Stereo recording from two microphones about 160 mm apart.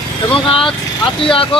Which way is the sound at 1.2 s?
35° left (ahead or behind).